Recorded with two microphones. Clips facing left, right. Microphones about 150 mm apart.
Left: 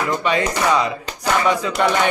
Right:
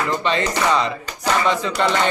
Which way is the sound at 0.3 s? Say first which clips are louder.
Left 1 dB; 10° left (ahead or behind).